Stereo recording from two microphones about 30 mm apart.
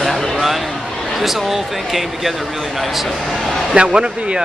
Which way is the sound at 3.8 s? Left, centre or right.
Right.